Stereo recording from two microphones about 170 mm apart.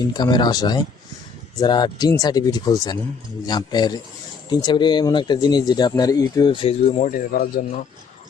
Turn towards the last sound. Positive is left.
turn(degrees=60)  # may be behind; listen again after turning